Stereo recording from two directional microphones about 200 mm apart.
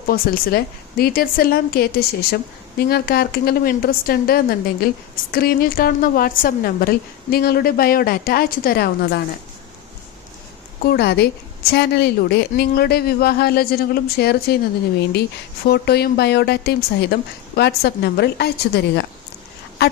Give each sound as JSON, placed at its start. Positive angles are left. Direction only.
{"t": 0.1, "sound": "a woman's voice", "side_deg": 45}
{"t": 10.9, "sound": "a woman's voice", "side_deg": 55}
{"t": 15.6, "sound": "a woman's voice", "side_deg": 55}
{"t": 19.8, "sound": "a sound", "side_deg": 55}